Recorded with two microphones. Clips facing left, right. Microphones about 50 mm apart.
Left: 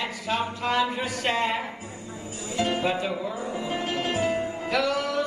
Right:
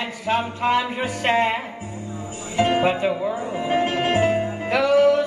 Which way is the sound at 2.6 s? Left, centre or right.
Right.